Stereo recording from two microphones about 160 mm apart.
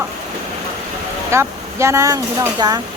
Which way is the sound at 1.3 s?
15° right (ahead or behind).